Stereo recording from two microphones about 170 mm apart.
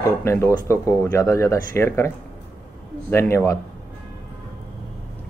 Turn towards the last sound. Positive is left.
turn(degrees=15)  # may be behind; listen again after turning